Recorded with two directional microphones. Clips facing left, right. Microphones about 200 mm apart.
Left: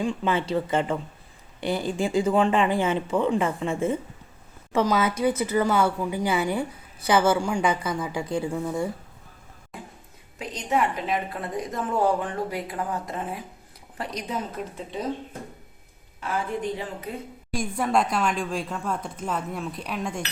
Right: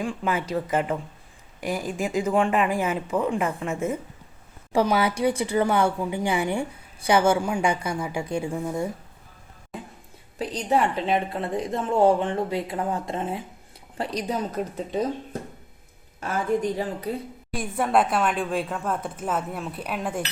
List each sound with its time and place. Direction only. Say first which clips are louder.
0.1 s speech: left 2 dB; 30° left (ahead or behind)
3.1 s speech: even; centre (ahead or behind)
3.7 s speech: left 2 dB; 30° left (ahead or behind)
4.7 s a woman's voice: right 1 dB; 15° right (ahead or behind)
10.3 s a woman's voice: right 2 dB; 35° right (ahead or behind)
17.5 s speech: right 1 dB; 5° right (ahead or behind)